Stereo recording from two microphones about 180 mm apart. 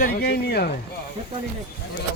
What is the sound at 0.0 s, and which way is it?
Speech, 60° left (ahead or behind).